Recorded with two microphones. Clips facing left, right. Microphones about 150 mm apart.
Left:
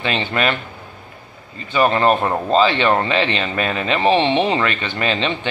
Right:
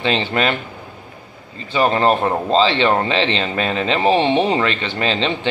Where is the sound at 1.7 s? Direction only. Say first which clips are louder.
Even; 25° right (ahead or behind).